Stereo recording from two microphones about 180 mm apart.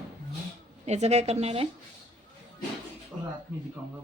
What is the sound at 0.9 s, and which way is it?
Speech, 40° right (ahead or behind).